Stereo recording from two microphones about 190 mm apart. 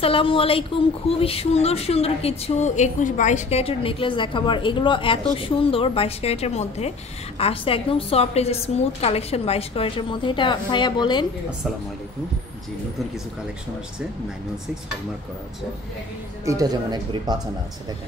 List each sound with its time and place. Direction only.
0.0 s speech: 30° left (ahead or behind)
16.4 s speech: 20° right (ahead or behind)